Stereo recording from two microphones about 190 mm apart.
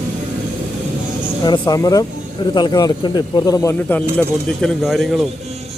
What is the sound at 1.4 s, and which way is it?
A man's voice, 25° left (ahead or behind).